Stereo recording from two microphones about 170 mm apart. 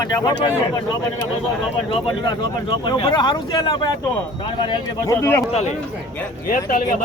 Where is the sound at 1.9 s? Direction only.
30° left (ahead or behind).